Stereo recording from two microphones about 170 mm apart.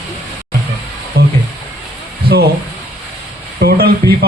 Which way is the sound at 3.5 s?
65° right (ahead or behind).